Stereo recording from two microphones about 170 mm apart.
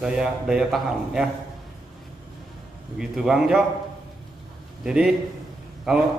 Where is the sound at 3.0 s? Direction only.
Centre (ahead or behind).